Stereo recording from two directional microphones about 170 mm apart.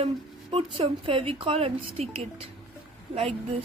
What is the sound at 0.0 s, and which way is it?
Speech, 35° right (ahead or behind).